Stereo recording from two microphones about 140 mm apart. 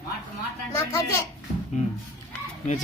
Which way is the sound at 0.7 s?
25° left (ahead or behind).